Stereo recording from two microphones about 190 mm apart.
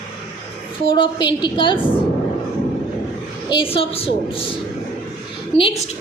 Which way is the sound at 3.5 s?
30° left (ahead or behind).